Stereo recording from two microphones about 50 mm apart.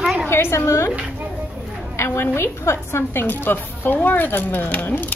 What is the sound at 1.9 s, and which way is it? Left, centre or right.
A woman's voice, left.